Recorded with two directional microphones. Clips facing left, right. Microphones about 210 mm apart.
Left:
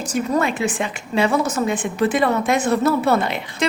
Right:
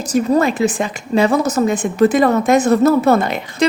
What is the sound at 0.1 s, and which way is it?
A woman's voice, 40° right (ahead or behind).